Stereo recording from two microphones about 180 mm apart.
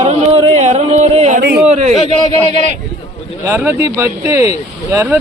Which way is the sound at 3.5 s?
10° right (ahead or behind).